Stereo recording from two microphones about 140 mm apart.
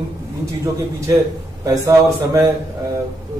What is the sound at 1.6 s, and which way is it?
Speech, 25° right (ahead or behind).